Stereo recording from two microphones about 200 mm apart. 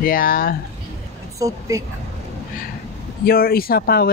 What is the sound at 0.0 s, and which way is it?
Speech, 45° left (ahead or behind).